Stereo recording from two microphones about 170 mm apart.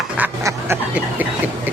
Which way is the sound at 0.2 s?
10° right (ahead or behind).